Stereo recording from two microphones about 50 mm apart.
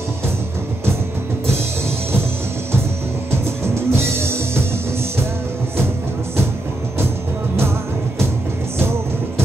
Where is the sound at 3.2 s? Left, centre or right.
Right.